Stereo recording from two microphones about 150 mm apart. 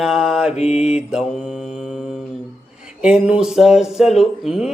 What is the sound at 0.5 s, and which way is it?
Mantra, 45° left (ahead or behind).